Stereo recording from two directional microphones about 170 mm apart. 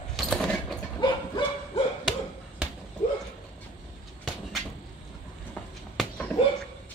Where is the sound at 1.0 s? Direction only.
25° left (ahead or behind).